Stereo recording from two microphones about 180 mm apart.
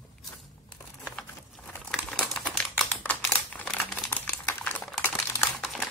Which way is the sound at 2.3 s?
5° left (ahead or behind).